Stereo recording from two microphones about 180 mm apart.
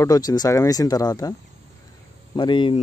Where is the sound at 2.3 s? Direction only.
25° left (ahead or behind).